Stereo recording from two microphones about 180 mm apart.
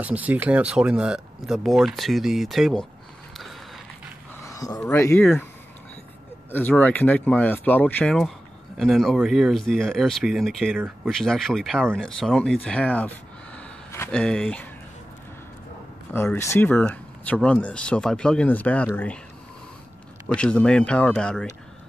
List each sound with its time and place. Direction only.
0.0 s speech: 10° right (ahead or behind)
4.5 s speech: 20° left (ahead or behind)
6.5 s speech: 10° left (ahead or behind)
13.6 s a sound: 10° left (ahead or behind)
16.1 s speech: 10° left (ahead or behind)
20.3 s speech: 5° left (ahead or behind)